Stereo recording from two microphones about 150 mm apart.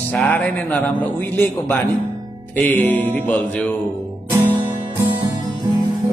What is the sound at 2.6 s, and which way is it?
Speech, 10° left (ahead or behind).